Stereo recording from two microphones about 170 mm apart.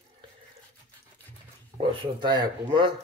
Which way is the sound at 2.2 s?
25° right (ahead or behind).